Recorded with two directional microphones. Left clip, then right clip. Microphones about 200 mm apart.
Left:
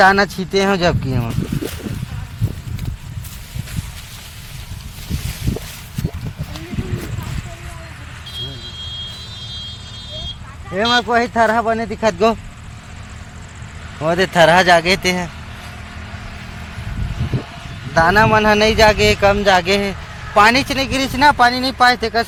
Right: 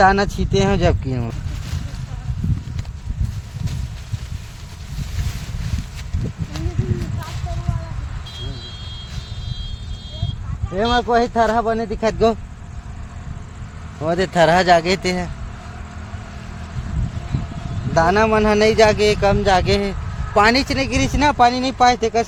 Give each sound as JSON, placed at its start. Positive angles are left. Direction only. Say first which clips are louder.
{"t": 0.0, "sound": "speech", "louder": "left 3 dB", "side_deg": 20}
{"t": 10.8, "sound": "speech", "louder": "left 2 dB", "side_deg": 20}
{"t": 14.0, "sound": "speech", "louder": "left 3 dB", "side_deg": 15}
{"t": 17.9, "sound": "speech", "louder": "left 3 dB", "side_deg": 10}